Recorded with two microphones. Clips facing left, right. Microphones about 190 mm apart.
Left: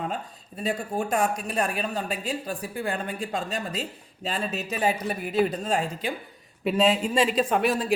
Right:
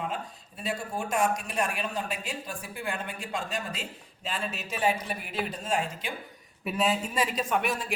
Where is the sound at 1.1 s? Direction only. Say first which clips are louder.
Left 1 dB; 35° left (ahead or behind).